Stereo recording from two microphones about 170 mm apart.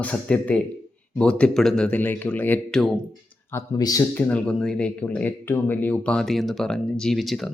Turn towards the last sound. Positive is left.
turn(degrees=0)  # may be behind; listen again after turning